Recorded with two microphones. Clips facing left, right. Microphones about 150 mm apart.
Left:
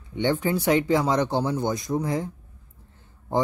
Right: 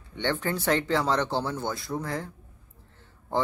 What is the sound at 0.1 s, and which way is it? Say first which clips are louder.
Speech: left 5 dB; 10° left (ahead or behind).